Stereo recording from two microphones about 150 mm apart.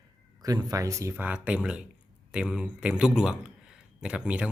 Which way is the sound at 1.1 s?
10° right (ahead or behind).